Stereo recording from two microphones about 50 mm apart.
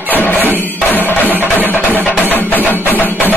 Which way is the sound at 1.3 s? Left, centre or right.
Right.